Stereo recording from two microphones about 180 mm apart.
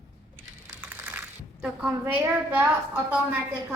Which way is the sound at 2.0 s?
10° right (ahead or behind).